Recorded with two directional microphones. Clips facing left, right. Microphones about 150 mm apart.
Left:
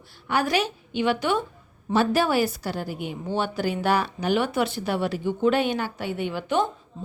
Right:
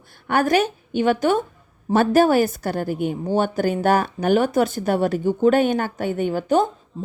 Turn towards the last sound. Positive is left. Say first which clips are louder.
# right 5 dB
turn(degrees=-40)  # may be behind; listen again after turning